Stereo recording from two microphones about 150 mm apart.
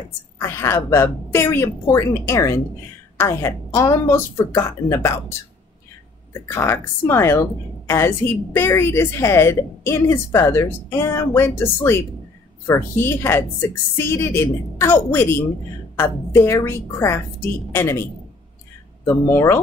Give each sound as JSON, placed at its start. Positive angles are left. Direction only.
{"t": 0.4, "sound": "a woman's voice", "side_deg": 15}
{"t": 6.4, "sound": "a woman's voice", "side_deg": 15}
{"t": 19.0, "sound": "a woman's voice", "side_deg": 15}